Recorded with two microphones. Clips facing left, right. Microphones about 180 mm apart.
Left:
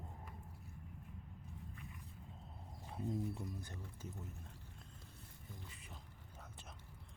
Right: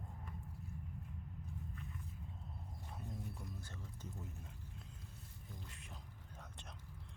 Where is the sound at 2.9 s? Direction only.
30° left (ahead or behind).